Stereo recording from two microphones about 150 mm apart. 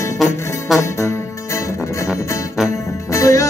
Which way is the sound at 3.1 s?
20° left (ahead or behind).